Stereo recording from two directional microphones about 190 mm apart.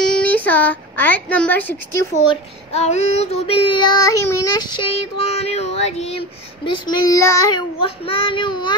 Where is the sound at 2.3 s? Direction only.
35° left (ahead or behind); by 4.6 s 20° left (ahead or behind).